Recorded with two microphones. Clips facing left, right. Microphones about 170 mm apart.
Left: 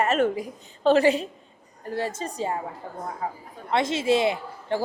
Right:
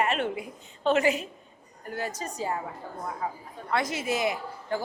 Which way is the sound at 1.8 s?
30° left (ahead or behind).